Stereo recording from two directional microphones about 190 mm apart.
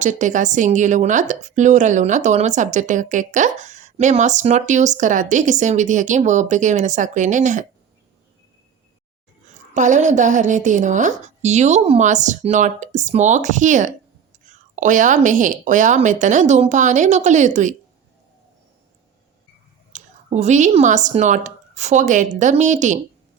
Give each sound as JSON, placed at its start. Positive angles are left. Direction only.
{"t": 0.0, "sound": "a woman's voice", "side_deg": -40}
{"t": 9.7, "sound": "a woman's voice", "side_deg": -40}
{"t": 19.9, "sound": "speech", "side_deg": -40}